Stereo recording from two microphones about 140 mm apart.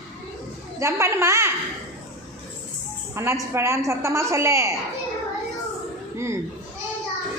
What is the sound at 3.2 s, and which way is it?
A woman's voice, 20° right (ahead or behind).